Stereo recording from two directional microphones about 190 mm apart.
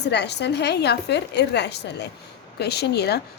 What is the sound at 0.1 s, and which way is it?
A woman's voice, 65° left (ahead or behind).